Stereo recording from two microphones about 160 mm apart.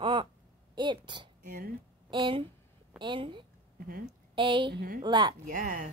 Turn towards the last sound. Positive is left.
turn(degrees=-55)  # may be behind; listen again after turning